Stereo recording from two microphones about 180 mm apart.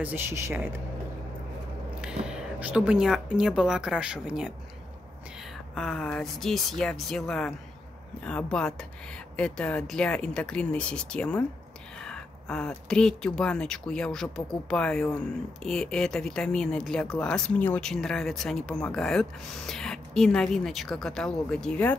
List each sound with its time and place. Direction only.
0.0 s speech: 10° right (ahead or behind)
2.0 s speech: 5° right (ahead or behind)
5.8 s speech: 5° left (ahead or behind)